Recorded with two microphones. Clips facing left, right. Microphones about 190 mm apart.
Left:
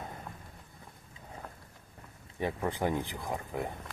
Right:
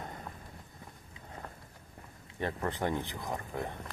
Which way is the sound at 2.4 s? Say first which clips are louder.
Left 2 dB; 10° left (ahead or behind).